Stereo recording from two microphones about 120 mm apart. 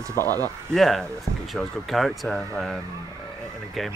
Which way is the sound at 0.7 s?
Centre (ahead or behind).